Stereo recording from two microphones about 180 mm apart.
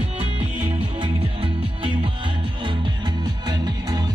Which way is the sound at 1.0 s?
30° right (ahead or behind).